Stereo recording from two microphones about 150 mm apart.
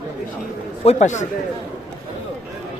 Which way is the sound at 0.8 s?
45° left (ahead or behind).